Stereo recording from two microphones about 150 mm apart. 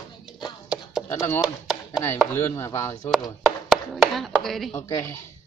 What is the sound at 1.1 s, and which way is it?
Chopping, 20° left (ahead or behind).